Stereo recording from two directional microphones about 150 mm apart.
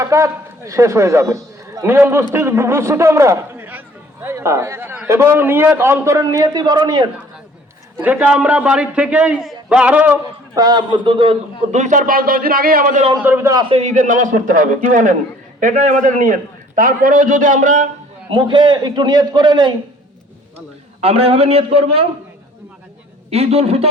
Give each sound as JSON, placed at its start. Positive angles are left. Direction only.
{"t": 0.0, "sound": "a man's voice", "side_deg": -20}
{"t": 8.0, "sound": "a man's voice", "side_deg": -10}
{"t": 10.5, "sound": "a man's voice", "side_deg": -25}
{"t": 11.7, "sound": "a man's voice", "side_deg": -55}
{"t": 13.2, "sound": "a man's voice", "side_deg": -15}
{"t": 13.5, "sound": "a man's voice", "side_deg": -30}
{"t": 13.7, "sound": "a man's voice", "side_deg": -55}
{"t": 18.3, "sound": "a man's voice", "side_deg": -30}
{"t": 21.0, "sound": "a man's voice", "side_deg": -40}
{"t": 23.3, "sound": "a man's voice", "side_deg": -40}